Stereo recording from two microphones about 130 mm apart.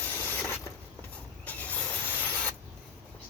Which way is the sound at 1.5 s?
10° left (ahead or behind).